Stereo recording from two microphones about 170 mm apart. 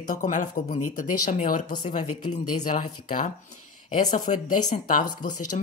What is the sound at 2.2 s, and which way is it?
Speech, 45° left (ahead or behind).